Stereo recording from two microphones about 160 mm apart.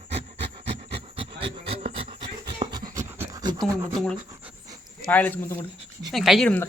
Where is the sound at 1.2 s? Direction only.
35° right (ahead or behind).